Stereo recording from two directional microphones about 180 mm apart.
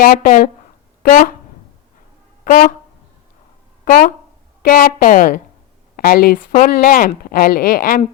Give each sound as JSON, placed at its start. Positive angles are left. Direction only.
{"t": 0.0, "sound": "speech", "side_deg": 55}
{"t": 2.4, "sound": "a sound", "side_deg": 45}
{"t": 3.8, "sound": "speech", "side_deg": 50}